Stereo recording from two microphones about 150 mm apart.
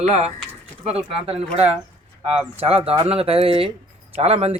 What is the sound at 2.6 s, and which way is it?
Speech, 40° right (ahead or behind).